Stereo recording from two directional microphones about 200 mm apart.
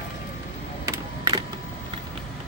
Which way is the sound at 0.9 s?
20° right (ahead or behind).